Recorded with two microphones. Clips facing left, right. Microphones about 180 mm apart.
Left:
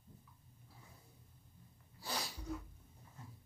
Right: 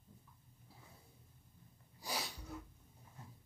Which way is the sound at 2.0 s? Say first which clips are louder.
Even; 10° right (ahead or behind).